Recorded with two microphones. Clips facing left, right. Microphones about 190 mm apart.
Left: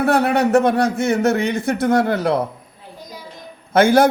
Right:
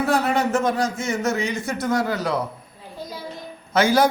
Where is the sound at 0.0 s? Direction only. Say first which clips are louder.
Left 4 dB; 60° left (ahead or behind).